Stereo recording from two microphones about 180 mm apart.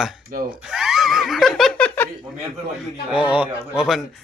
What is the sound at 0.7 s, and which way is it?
Giggle, centre (ahead or behind).